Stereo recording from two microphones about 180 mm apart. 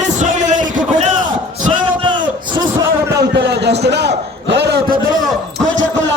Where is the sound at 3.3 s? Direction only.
70° right (ahead or behind).